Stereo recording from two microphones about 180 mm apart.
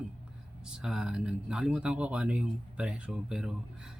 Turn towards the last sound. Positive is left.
turn(degrees=-5)  # may be behind; listen again after turning